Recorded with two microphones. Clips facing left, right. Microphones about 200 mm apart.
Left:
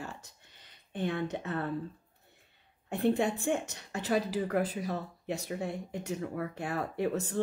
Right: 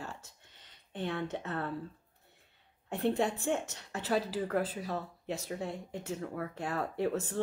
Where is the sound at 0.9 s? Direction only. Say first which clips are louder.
Left 3 dB; 15° left (ahead or behind).